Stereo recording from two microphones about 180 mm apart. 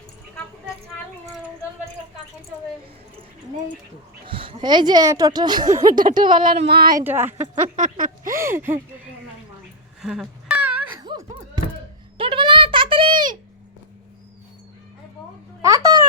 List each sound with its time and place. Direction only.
4.3 s speech: 30° right (ahead or behind)
5.9 s speech: 50° right (ahead or behind)
6.1 s speech: 25° right (ahead or behind)
6.5 s a sound: 60° right (ahead or behind)
7.0 s speech: 10° right (ahead or behind)
7.4 s speech: 35° right (ahead or behind)
7.9 s speech: 50° right (ahead or behind)
8.4 s speech: 15° right (ahead or behind)
10.0 s a sound: 5° right (ahead or behind)
11.0 s music: 25° right (ahead or behind)
12.1 s a sound: 30° right (ahead or behind)
15.6 s a sound: 20° right (ahead or behind)